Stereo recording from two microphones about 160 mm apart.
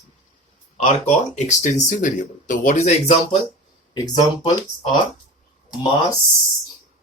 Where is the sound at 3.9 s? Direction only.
25° left (ahead or behind).